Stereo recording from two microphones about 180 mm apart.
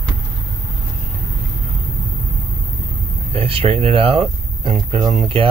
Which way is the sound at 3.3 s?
30° right (ahead or behind).